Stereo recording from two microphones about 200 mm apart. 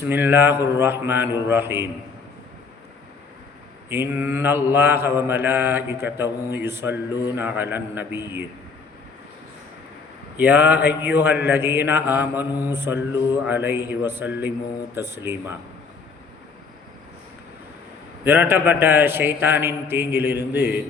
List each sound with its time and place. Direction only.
0.0 s mantra: 10° right (ahead or behind)
3.8 s mantra: 10° right (ahead or behind)
7.1 s a man's voice: 20° left (ahead or behind)
7.3 s mantra: 10° right (ahead or behind)
10.3 s mantra: 10° right (ahead or behind)
12.5 s a man's voice: 20° left (ahead or behind)
12.7 s mantra: 10° right (ahead or behind)
18.3 s mantra: 10° right (ahead or behind)